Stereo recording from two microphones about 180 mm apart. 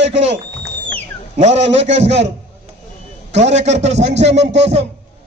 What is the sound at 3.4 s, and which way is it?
Speech, 40° right (ahead or behind).